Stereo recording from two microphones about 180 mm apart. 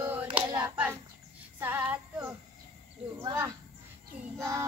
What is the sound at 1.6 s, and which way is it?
Child singing, 10° right (ahead or behind).